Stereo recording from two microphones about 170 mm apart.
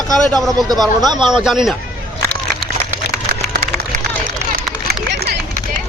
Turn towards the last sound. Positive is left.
turn(degrees=-65)  # may be behind; listen again after turning